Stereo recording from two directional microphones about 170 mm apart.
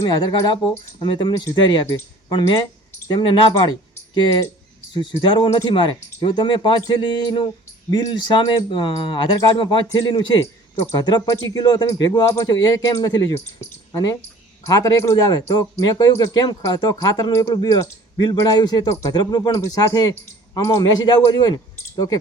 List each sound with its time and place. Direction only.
0.0 s speech: 25° left (ahead or behind)
4.9 s speech: 30° left (ahead or behind)